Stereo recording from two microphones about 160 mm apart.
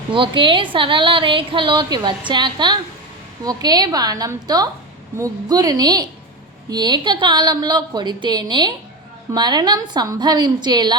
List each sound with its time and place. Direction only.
0.1 s a woman's voice: 30° right (ahead or behind)